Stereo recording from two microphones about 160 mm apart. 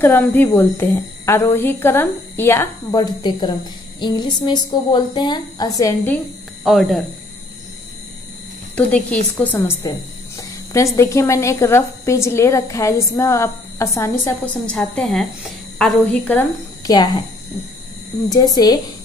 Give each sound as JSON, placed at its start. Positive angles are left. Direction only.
{"t": 0.0, "sound": "a woman's voice", "side_deg": 15}
{"t": 6.6, "sound": "a woman's voice", "side_deg": 0}
{"t": 8.7, "sound": "a woman's voice", "side_deg": 10}
{"t": 14.7, "sound": "a woman's voice", "side_deg": 5}
{"t": 16.8, "sound": "a woman's voice", "side_deg": 25}
{"t": 18.3, "sound": "a woman's voice", "side_deg": 25}